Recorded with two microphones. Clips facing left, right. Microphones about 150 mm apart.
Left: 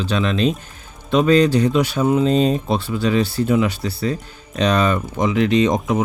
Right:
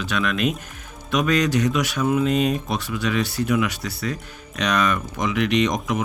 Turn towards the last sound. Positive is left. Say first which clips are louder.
# left 4 dB
turn(degrees=30)  # may be behind; listen again after turning